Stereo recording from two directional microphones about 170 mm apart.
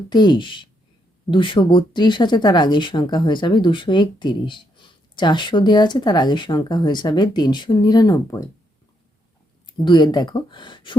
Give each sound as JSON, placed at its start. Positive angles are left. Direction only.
{"t": 0.1, "sound": "speech", "side_deg": 25}
{"t": 9.7, "sound": "speech", "side_deg": 25}